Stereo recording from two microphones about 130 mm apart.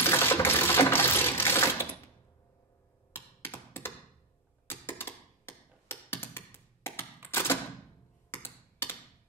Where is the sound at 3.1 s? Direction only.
20° left (ahead or behind).